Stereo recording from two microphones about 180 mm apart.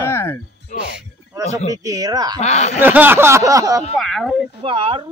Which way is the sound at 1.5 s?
20° right (ahead or behind).